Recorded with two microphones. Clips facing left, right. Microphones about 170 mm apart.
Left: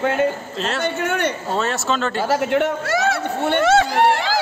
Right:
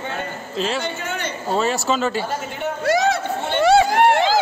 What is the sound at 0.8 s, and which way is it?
Speech, 65° left (ahead or behind).